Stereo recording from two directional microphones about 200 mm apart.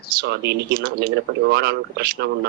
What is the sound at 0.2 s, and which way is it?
A man's voice, 55° right (ahead or behind).